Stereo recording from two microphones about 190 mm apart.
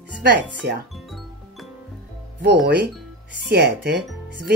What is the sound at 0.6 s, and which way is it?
Speech, 60° right (ahead or behind).